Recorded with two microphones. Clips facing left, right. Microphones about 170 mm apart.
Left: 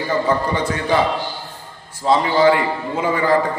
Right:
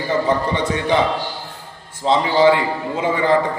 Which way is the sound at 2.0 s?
20° right (ahead or behind).